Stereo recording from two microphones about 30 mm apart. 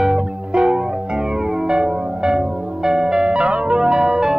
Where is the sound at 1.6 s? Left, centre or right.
Right.